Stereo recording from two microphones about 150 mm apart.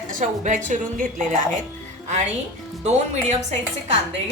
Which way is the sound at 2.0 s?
50° right (ahead or behind).